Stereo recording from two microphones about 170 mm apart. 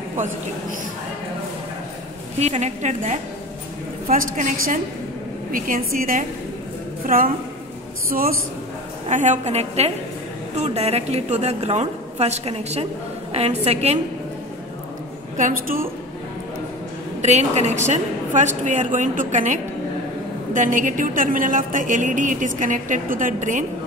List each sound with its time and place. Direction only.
2.3 s a woman's voice: 40° right (ahead or behind)
4.1 s a woman's voice: 55° right (ahead or behind)
9.1 s a woman's voice: 45° right (ahead or behind)
15.3 s a woman's voice: 55° right (ahead or behind)
17.2 s a woman's voice: 40° right (ahead or behind)